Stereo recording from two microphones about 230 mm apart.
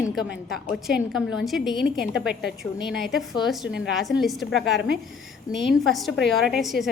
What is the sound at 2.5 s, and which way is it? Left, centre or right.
A woman's voice, centre.